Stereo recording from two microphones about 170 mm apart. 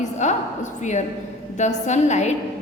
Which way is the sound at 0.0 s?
45° left (ahead or behind).